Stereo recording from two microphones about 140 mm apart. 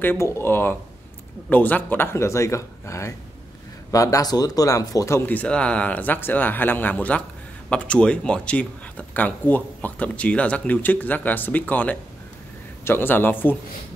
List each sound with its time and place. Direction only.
0.0 s speech: 15° left (ahead or behind)